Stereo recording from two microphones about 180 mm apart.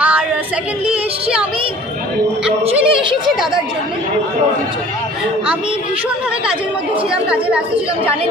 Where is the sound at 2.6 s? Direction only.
30° right (ahead or behind).